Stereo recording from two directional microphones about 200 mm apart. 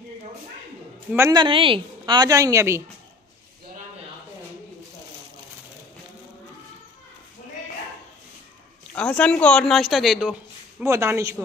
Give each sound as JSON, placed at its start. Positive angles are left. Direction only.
{"t": 1.1, "sound": "a woman's voice", "side_deg": -15}
{"t": 8.9, "sound": "speech", "side_deg": 5}
{"t": 10.9, "sound": "a woman's voice", "side_deg": -15}